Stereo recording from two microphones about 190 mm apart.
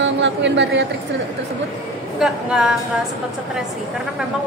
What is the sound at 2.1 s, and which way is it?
Speech, 5° right (ahead or behind).